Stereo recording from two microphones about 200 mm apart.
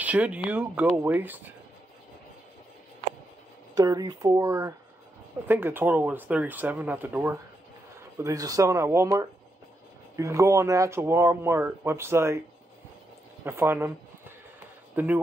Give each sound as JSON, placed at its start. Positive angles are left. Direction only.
{"t": 0.0, "sound": "speech", "side_deg": -5}
{"t": 3.7, "sound": "speech", "side_deg": -20}
{"t": 13.4, "sound": "speech", "side_deg": -10}